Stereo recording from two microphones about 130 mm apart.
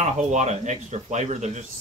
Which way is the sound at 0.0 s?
65° right (ahead or behind).